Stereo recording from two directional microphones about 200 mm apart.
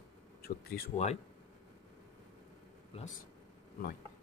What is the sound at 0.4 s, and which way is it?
Speech, 50° left (ahead or behind).